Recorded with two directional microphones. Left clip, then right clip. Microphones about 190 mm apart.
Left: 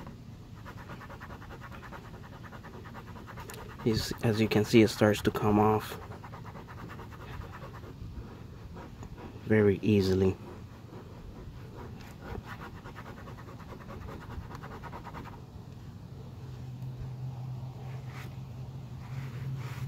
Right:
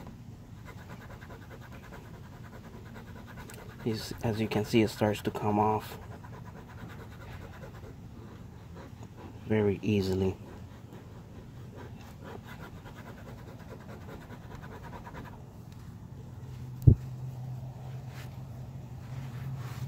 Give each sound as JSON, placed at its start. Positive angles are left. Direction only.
{"t": 3.8, "sound": "speech", "side_deg": 15}
{"t": 9.5, "sound": "speech", "side_deg": 15}